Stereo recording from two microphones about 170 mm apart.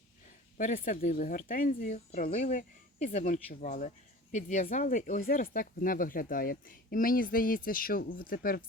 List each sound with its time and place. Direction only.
0.5 s speech: 55° left (ahead or behind)